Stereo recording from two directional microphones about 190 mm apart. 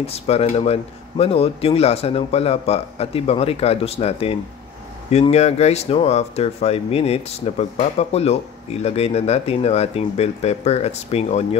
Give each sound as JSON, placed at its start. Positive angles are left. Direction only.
{"t": 0.0, "sound": "speech", "side_deg": 30}